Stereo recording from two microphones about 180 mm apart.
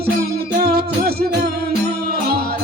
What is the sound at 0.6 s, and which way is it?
Music, 60° right (ahead or behind).